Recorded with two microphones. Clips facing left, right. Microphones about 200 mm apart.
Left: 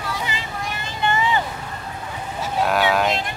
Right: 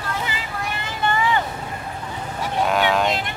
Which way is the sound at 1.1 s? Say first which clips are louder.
Even; 20° left (ahead or behind).